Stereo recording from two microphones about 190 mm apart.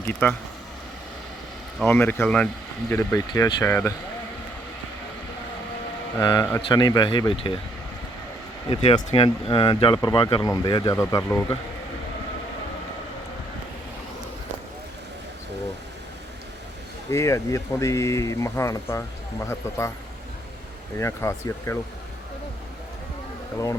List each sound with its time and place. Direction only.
0.0 s speech: 10° left (ahead or behind)
1.8 s speech: 10° left (ahead or behind)
6.1 s speech: 15° left (ahead or behind)
8.7 s speech: 30° left (ahead or behind); by 11.5 s 10° left (ahead or behind)
17.1 s speech: 15° left (ahead or behind)
21.0 s speech: 15° left (ahead or behind)